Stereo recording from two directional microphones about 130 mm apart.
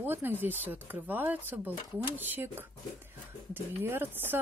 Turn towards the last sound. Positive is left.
turn(degrees=-15)  # may be behind; listen again after turning